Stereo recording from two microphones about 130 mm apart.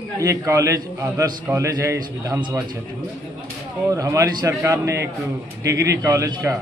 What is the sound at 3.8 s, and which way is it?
A man's voice, 25° right (ahead or behind).